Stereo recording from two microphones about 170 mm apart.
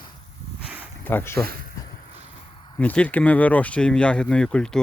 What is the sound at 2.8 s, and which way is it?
Speech, 5° left (ahead or behind).